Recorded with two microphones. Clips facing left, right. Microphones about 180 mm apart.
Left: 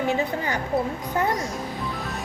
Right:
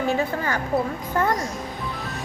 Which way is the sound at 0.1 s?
20° left (ahead or behind).